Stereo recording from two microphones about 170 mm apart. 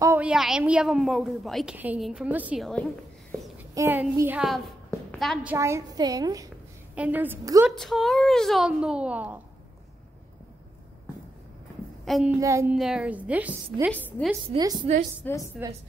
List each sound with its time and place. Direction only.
0.0 s a sound: 15° right (ahead or behind)
0.3 s a woman's voice: 5° right (ahead or behind)
2.6 s a woman's voice: 5° left (ahead or behind)
3.7 s a woman's voice: 15° right (ahead or behind)
4.5 s a sound: centre (ahead or behind)
5.4 s a woman's voice: 15° right (ahead or behind)
7.0 s a woman's voice: 10° right (ahead or behind)
7.8 s speech: centre (ahead or behind)
12.0 s a woman's voice: centre (ahead or behind)
12.4 s a woman's voice: 20° right (ahead or behind)
12.7 s a woman's voice: 5° right (ahead or behind)
13.9 s a woman's voice: 10° left (ahead or behind)
14.5 s a woman's voice: 25° right (ahead or behind)
15.2 s a woman's voice: 10° left (ahead or behind)